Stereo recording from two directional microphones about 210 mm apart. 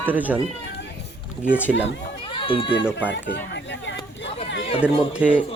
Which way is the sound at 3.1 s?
60° left (ahead or behind).